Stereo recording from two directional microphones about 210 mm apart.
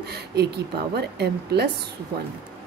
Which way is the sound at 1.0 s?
50° right (ahead or behind).